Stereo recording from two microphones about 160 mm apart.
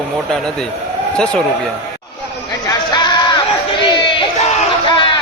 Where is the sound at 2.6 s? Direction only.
25° left (ahead or behind).